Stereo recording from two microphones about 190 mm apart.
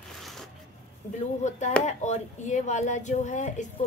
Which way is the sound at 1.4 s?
40° left (ahead or behind).